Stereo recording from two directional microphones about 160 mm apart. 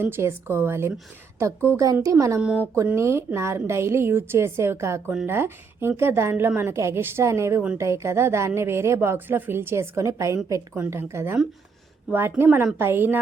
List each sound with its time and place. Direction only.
0.0 s speech: 15° right (ahead or behind)